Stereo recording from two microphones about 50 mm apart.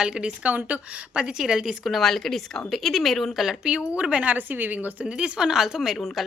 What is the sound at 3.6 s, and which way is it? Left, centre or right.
Speech, centre.